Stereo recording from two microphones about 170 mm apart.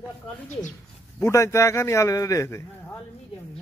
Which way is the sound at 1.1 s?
15° left (ahead or behind).